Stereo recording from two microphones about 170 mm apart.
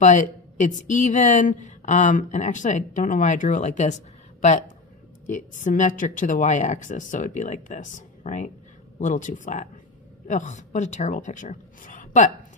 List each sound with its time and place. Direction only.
0.0 s a woman's voice: 45° left (ahead or behind)